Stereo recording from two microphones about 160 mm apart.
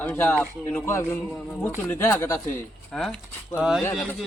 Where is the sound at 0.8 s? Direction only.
15° left (ahead or behind).